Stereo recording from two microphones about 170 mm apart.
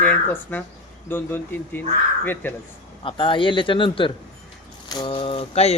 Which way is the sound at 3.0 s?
30° left (ahead or behind).